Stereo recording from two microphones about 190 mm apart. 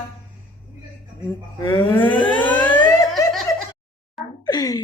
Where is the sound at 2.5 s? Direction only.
10° left (ahead or behind).